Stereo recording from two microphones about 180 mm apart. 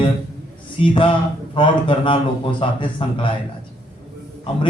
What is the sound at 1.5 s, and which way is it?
Speech, 25° left (ahead or behind).